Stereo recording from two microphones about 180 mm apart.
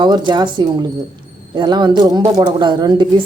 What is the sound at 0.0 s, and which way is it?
A woman's voice, 25° right (ahead or behind).